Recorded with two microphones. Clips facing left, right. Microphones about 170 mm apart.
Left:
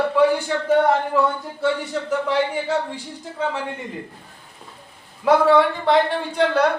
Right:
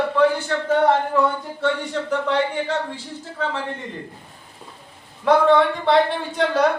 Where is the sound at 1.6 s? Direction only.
5° left (ahead or behind).